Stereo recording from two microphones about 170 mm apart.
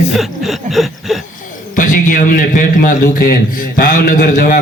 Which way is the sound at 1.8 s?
50° left (ahead or behind).